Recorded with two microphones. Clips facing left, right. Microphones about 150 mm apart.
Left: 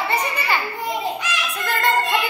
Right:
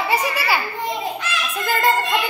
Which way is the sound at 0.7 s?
10° left (ahead or behind).